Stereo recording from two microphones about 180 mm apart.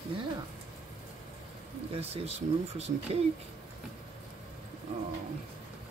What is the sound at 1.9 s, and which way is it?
Speech, 35° right (ahead or behind).